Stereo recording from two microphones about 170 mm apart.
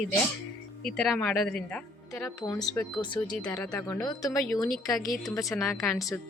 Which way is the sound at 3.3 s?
5° left (ahead or behind).